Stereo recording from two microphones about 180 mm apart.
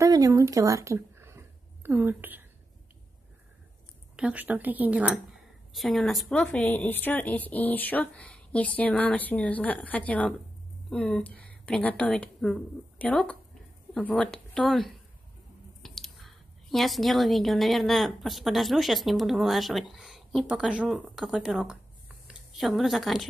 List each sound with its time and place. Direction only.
0.0 s speech: 20° right (ahead or behind)
4.2 s a woman's voice: 10° right (ahead or behind)